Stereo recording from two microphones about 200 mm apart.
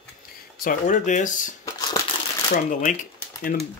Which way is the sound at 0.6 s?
40° left (ahead or behind).